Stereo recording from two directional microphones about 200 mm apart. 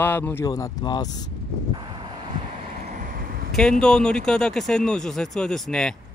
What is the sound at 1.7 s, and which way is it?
Vehicle, 25° right (ahead or behind).